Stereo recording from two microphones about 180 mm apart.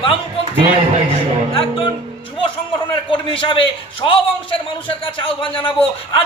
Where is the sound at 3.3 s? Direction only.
30° left (ahead or behind).